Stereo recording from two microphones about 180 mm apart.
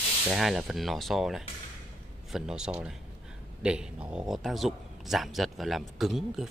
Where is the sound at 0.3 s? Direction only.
Centre (ahead or behind).